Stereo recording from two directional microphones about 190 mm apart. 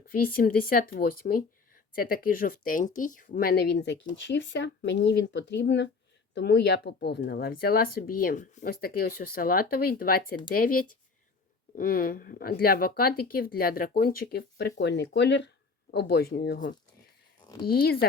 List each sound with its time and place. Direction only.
0.1 s speech: 50° left (ahead or behind)
4.3 s speech: 70° left (ahead or behind); by 18.0 s 55° left (ahead or behind)